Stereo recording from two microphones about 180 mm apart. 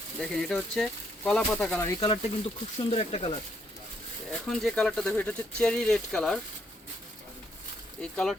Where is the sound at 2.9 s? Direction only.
35° left (ahead or behind).